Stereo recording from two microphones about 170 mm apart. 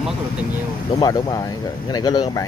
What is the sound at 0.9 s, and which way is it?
Speech, 20° left (ahead or behind).